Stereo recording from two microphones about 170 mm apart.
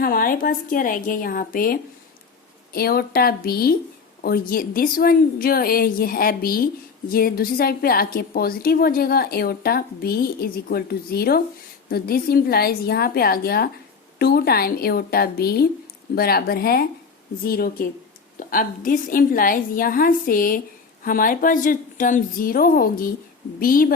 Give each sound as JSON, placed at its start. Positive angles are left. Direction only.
{"t": 0.0, "sound": "a woman's voice", "side_deg": 60}